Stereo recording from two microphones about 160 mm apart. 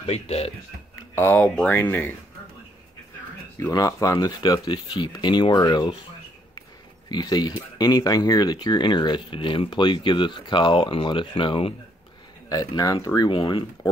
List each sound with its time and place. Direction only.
0.0 s speech: 40° left (ahead or behind)
1.1 s speech: 15° left (ahead or behind)
3.5 s speech: 20° left (ahead or behind)
7.1 s speech: 25° left (ahead or behind)
12.4 s speech: 20° left (ahead or behind)